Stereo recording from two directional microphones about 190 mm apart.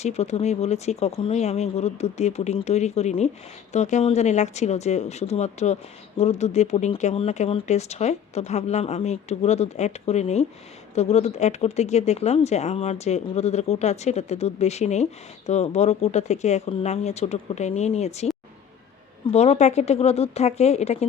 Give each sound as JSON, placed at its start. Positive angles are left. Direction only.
{"t": 0.0, "sound": "speech", "side_deg": 35}
{"t": 19.3, "sound": "speech", "side_deg": 35}